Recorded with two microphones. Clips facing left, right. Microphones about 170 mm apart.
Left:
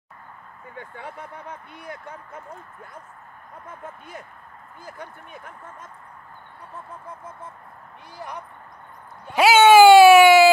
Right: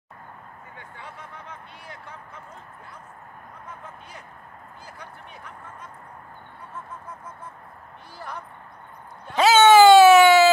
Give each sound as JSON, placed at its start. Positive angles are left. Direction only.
{"t": 0.7, "sound": "speech", "side_deg": 55}
{"t": 4.8, "sound": "speech", "side_deg": 50}
{"t": 9.3, "sound": "a sound", "side_deg": 10}